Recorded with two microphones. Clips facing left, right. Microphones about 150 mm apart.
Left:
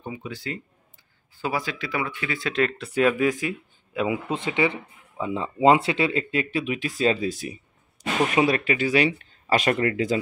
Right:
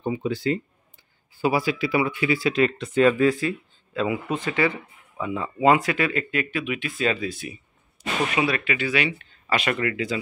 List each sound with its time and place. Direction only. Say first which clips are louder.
0.0 s speech: right 9 dB; 30° right (ahead or behind)
1.3 s speech: right 6 dB; 10° right (ahead or behind)
2.9 s speech: right 3 dB; 10° left (ahead or behind); by 10.2 s 40° left (ahead or behind)